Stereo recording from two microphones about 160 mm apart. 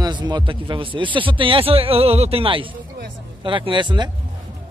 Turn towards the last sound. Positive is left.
turn(degrees=-30)  # may be behind; listen again after turning